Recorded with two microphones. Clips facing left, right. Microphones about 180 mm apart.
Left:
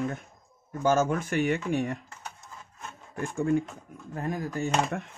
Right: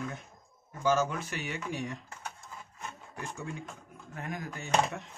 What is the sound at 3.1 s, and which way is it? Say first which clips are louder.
Speech: left 15 dB; 50° left (ahead or behind).